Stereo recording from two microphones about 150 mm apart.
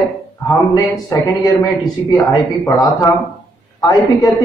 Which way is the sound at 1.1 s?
25° left (ahead or behind).